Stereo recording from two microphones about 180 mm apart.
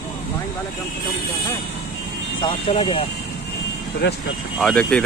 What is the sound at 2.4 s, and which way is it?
Speech, 30° left (ahead or behind).